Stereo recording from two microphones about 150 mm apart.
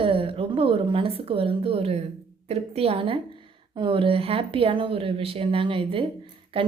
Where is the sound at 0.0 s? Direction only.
35° right (ahead or behind).